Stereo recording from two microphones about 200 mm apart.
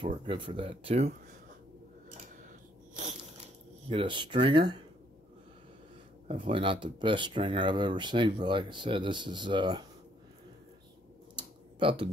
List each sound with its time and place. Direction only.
0.0 s speech: 25° right (ahead or behind)
2.9 s a sound: 40° right (ahead or behind)
3.9 s speech: 25° right (ahead or behind)
6.2 s speech: 25° right (ahead or behind)
11.3 s typing: 25° right (ahead or behind)